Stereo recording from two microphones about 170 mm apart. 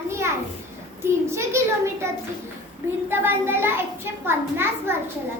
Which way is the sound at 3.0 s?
15° right (ahead or behind).